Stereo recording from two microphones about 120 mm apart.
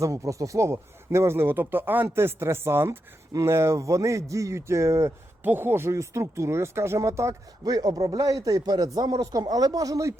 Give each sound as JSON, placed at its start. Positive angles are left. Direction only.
{"t": 0.0, "sound": "speech", "side_deg": -25}